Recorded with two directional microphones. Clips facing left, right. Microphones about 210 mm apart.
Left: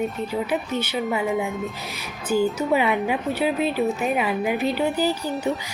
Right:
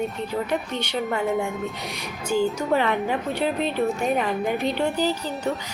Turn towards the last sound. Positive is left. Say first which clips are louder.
# left 2 dB
turn(degrees=5)  # may be behind; listen again after turning